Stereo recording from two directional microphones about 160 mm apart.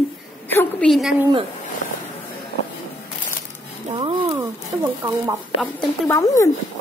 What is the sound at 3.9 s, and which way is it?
Speech, 30° right (ahead or behind).